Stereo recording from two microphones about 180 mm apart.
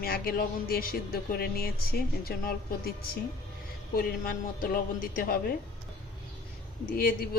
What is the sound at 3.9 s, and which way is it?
A man's voice, 50° left (ahead or behind).